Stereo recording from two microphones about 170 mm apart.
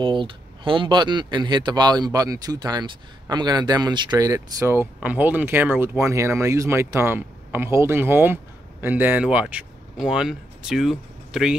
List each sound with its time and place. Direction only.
0.0 s speech: 30° right (ahead or behind); by 11.5 s centre (ahead or behind)